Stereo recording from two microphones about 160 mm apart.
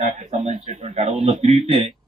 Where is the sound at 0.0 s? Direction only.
45° right (ahead or behind).